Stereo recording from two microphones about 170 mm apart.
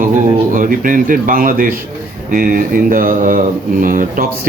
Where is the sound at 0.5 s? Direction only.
55° right (ahead or behind).